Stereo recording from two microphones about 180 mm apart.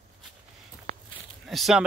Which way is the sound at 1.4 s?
Centre (ahead or behind).